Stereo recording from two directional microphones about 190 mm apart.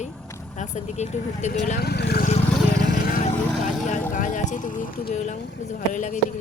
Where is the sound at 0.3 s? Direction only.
15° left (ahead or behind).